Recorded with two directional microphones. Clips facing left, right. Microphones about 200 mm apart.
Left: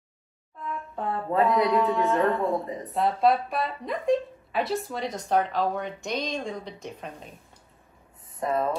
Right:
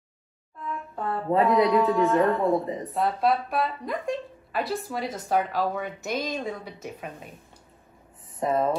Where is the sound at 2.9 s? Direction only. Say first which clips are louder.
Left 2 dB; centre (ahead or behind).